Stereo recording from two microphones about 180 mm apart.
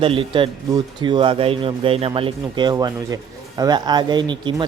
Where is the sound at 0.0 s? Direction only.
30° right (ahead or behind).